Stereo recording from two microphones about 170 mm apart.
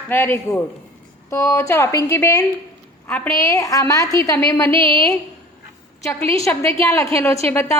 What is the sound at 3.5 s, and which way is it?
A woman's voice, 20° left (ahead or behind).